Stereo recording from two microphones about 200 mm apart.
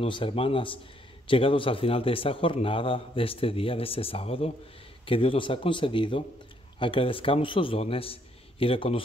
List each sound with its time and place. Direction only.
0.0 s a man's voice: 25° left (ahead or behind)